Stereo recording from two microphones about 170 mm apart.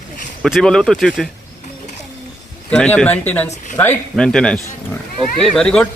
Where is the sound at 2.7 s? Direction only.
5° left (ahead or behind).